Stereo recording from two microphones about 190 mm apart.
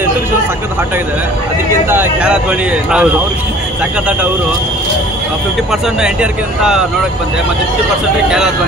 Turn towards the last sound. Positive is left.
turn(degrees=-5)  # may be behind; listen again after turning